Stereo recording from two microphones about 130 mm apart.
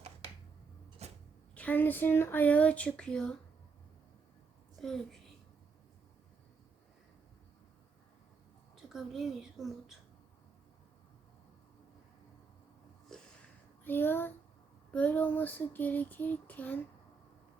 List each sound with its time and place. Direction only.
1.0 s a sound: 55° right (ahead or behind)
1.5 s child singing: 15° left (ahead or behind)
4.8 s a woman's voice: 5° left (ahead or behind)
8.7 s a woman's voice: 5° right (ahead or behind)
13.8 s child singing: 15° left (ahead or behind)